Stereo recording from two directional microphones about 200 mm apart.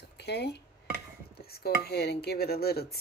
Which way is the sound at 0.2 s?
55° left (ahead or behind).